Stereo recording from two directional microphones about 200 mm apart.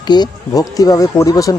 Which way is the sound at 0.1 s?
20° left (ahead or behind).